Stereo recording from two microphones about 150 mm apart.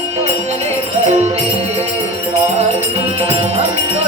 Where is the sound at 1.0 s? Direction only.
50° right (ahead or behind).